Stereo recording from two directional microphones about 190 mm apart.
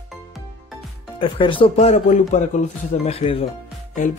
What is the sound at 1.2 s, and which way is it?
Speech, 25° left (ahead or behind).